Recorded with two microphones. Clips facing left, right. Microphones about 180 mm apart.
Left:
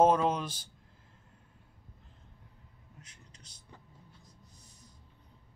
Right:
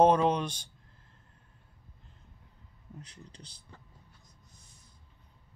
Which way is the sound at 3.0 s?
30° right (ahead or behind).